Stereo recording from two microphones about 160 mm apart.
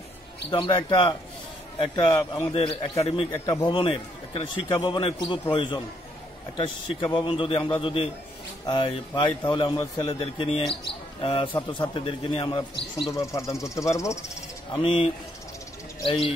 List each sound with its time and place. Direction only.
0.5 s a man's voice: 30° left (ahead or behind)
3.3 s speech: 20° left (ahead or behind)
3.6 s a man's voice: 30° left (ahead or behind)
13.1 s speech: 20° left (ahead or behind)
14.7 s a man's voice: 30° left (ahead or behind)
16.1 s a man's voice: 35° left (ahead or behind)